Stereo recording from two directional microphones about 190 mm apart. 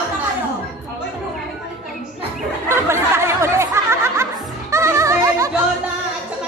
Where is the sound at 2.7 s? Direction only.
15° right (ahead or behind).